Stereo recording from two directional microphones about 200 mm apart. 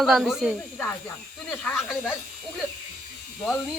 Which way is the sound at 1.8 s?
5° right (ahead or behind).